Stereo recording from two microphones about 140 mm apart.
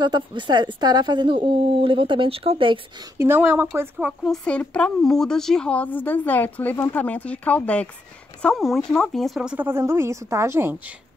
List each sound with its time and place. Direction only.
0.0 s a woman's voice: 35° right (ahead or behind)
3.2 s speech: 15° right (ahead or behind)
4.2 s speech: 5° left (ahead or behind)
9.7 s a woman's voice: 20° right (ahead or behind)